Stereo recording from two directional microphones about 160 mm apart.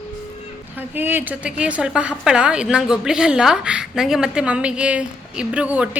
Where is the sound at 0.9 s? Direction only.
10° right (ahead or behind).